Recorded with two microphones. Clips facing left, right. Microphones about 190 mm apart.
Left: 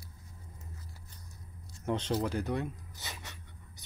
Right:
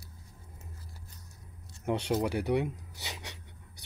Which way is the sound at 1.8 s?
10° right (ahead or behind).